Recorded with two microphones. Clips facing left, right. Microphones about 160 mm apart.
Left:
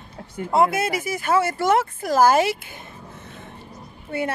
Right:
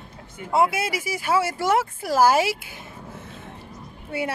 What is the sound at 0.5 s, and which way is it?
Speech, 10° right (ahead or behind).